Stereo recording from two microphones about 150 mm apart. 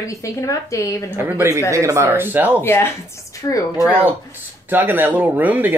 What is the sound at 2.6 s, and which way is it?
Speech, 15° left (ahead or behind).